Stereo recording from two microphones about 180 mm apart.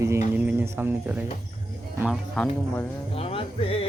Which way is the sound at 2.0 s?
Centre (ahead or behind).